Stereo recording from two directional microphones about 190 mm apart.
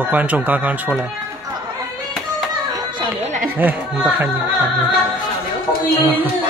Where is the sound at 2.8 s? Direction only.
25° right (ahead or behind).